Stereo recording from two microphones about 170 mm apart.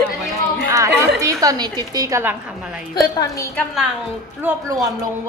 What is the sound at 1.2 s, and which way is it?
A woman's voice, 20° right (ahead or behind).